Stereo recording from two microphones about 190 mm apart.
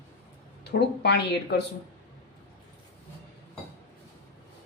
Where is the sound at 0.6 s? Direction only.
60° left (ahead or behind).